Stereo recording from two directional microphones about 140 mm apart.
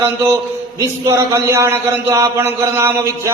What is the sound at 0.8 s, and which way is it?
A man's voice, 20° right (ahead or behind).